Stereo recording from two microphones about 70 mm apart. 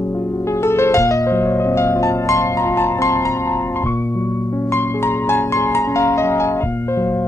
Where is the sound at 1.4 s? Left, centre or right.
Left.